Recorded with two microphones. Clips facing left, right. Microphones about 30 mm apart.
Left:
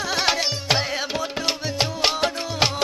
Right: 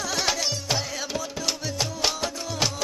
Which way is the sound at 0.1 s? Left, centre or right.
Left.